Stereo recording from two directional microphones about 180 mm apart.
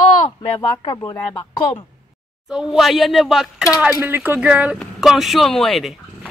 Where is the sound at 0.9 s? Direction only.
10° left (ahead or behind).